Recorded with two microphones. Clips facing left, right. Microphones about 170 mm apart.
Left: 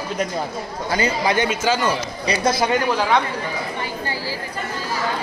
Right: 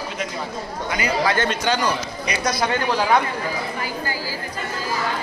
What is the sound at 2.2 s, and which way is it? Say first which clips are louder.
Speech: left 5 dB; 30° left (ahead or behind).